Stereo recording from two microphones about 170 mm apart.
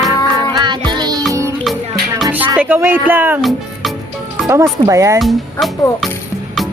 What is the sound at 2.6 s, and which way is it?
Speech, 15° right (ahead or behind).